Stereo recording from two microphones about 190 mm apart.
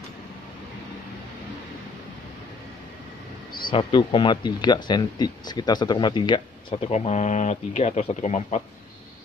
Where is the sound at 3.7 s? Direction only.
25° left (ahead or behind).